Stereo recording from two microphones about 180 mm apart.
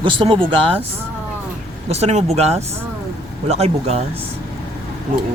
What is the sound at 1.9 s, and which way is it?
Speech, 35° right (ahead or behind).